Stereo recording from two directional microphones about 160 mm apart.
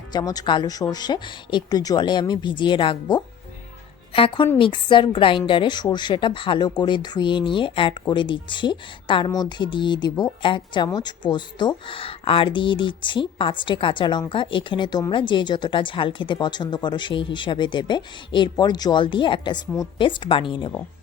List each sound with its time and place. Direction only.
0.1 s a woman's voice: 25° left (ahead or behind)